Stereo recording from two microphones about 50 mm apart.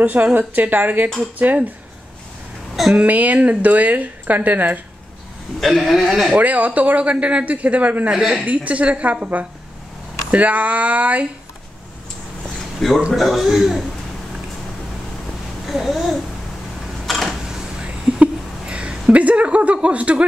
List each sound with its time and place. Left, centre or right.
0.0 s a woman's voice: right
2.9 s a woman's voice: right
5.6 s a man's voice: centre
6.3 s speech: right
8.1 s a woman's voice: centre
8.4 s speech: right
12.4 s a sound: centre
13.1 s a man's voice: centre
15.6 s babbling: centre
17.0 s a sound: centre
17.5 s a sound: centre
19.1 s speech: right